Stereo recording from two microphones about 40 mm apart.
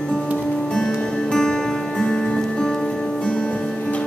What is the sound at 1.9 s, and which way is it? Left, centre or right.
Music, centre.